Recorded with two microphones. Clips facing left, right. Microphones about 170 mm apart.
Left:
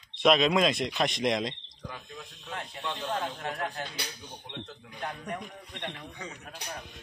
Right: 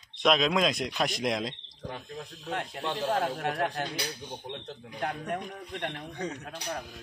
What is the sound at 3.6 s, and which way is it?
Speech, 40° right (ahead or behind).